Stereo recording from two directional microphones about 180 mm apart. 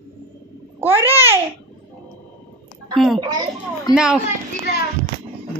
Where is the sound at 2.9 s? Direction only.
Centre (ahead or behind).